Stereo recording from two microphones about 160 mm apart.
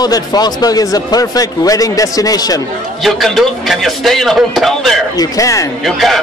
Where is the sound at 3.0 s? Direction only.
Centre (ahead or behind).